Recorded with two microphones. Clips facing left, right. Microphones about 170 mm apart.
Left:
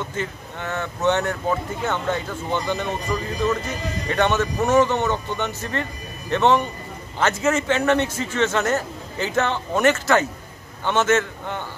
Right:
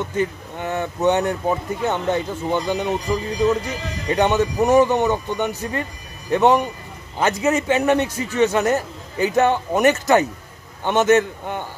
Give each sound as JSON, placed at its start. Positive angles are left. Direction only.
{"t": 0.0, "sound": "a man's voice", "side_deg": -15}
{"t": 4.1, "sound": "a man's voice", "side_deg": -15}